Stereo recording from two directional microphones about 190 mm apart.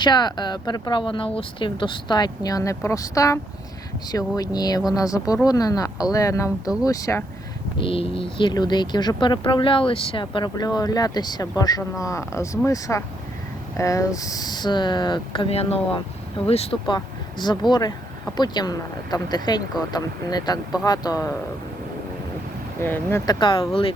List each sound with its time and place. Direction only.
0.0 s speech: 20° left (ahead or behind)
7.8 s speech: 30° left (ahead or behind)
22.8 s speech: 10° left (ahead or behind); by 23.9 s 30° left (ahead or behind)